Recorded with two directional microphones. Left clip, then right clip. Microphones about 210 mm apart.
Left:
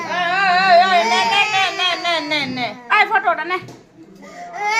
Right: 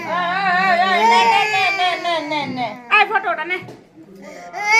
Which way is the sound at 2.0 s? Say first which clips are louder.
Left 1 dB; 20° left (ahead or behind).